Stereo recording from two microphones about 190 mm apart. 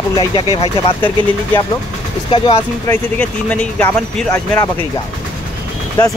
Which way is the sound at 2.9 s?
10° left (ahead or behind).